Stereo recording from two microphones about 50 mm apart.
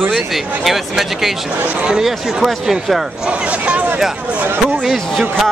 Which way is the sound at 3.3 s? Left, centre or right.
Right.